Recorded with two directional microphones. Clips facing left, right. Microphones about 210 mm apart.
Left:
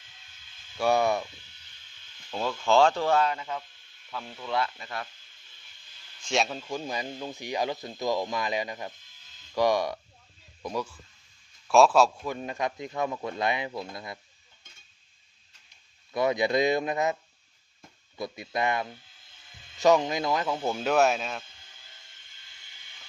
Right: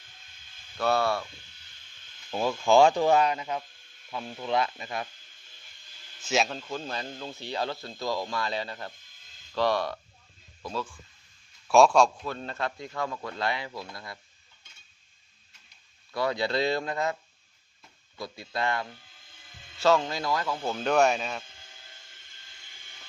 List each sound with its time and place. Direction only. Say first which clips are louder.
0.8 s speech: left 2 dB; 15° left (ahead or behind)
2.3 s speech: right 2 dB; 10° right (ahead or behind)
6.2 s speech: even; centre (ahead or behind); by 10.9 s 15° left (ahead or behind)
11.7 s speech: even; centre (ahead or behind); by 14.2 s 20° left (ahead or behind)
16.1 s speech: left 3 dB; 20° left (ahead or behind)
18.2 s speech: left 2 dB; 20° left (ahead or behind); by 21.4 s centre (ahead or behind)